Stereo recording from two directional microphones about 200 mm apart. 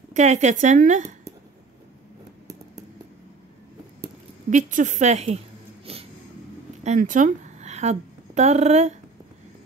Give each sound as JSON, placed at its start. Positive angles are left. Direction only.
{"t": 0.1, "sound": "speech", "side_deg": -35}
{"t": 4.5, "sound": "speech", "side_deg": -40}
{"t": 5.9, "sound": "a sound", "side_deg": -30}
{"t": 6.8, "sound": "a woman's voice", "side_deg": -35}